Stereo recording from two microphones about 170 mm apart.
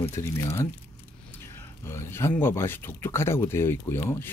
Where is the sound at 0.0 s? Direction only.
15° left (ahead or behind).